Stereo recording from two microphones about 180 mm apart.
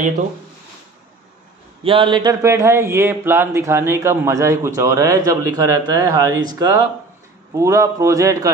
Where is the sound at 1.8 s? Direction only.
30° right (ahead or behind).